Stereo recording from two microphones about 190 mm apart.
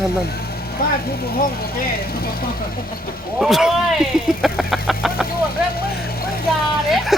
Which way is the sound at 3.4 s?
Centre (ahead or behind).